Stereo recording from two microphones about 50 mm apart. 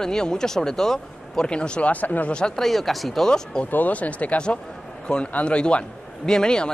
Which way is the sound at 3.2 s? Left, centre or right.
Centre.